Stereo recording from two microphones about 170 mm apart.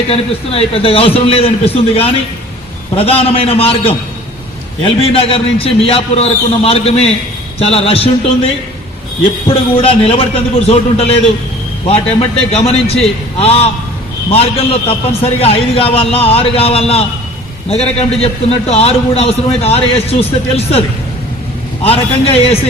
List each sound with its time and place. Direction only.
0.1 s a man's voice: 35° left (ahead or behind)
9.5 s a man's voice: 35° left (ahead or behind)
21.8 s a man's voice: 35° left (ahead or behind)